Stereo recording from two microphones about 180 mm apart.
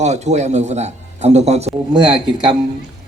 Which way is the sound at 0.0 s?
40° right (ahead or behind).